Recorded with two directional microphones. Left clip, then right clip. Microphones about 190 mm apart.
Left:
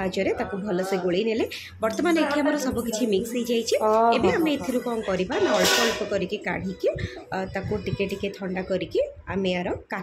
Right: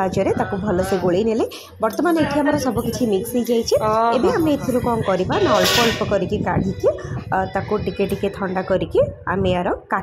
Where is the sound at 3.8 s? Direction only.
10° left (ahead or behind).